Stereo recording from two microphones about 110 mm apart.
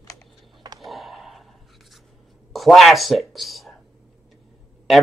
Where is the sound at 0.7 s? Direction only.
Centre (ahead or behind).